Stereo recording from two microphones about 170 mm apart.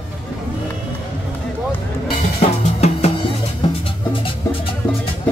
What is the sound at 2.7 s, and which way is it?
Music, 40° left (ahead or behind).